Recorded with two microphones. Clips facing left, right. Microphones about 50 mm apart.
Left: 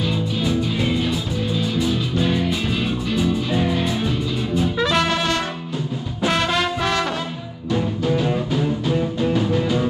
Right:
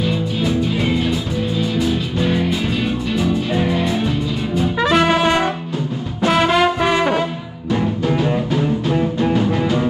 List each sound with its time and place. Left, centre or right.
3.2 s music: centre
4.6 s brass instrument: centre
6.2 s brass instrument: centre
6.6 s brass instrument: centre
8.1 s music: right